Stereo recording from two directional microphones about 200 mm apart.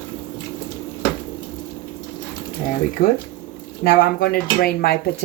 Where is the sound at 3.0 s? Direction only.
45° left (ahead or behind).